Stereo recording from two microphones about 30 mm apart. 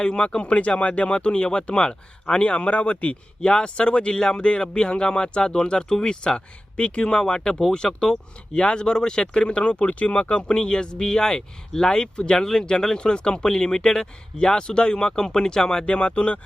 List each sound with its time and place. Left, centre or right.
0.0 s speech: left
2.4 s speech: left
3.4 s speech: left
4.4 s speech: left
7.3 s speech: left
15.8 s speech: left